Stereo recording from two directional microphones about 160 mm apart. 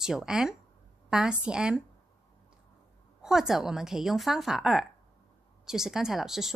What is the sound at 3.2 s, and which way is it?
Speech, centre (ahead or behind).